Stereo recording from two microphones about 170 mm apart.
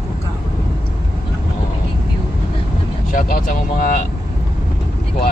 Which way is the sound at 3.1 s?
55° left (ahead or behind).